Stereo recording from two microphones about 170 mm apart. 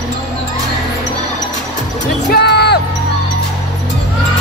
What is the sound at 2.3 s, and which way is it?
Music, 75° left (ahead or behind).